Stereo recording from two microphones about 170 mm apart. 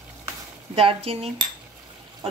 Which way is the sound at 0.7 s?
35° right (ahead or behind).